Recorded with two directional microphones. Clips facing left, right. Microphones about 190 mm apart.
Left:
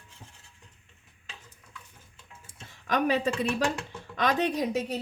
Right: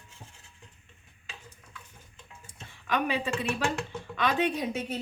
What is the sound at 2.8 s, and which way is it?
Speech, 40° left (ahead or behind).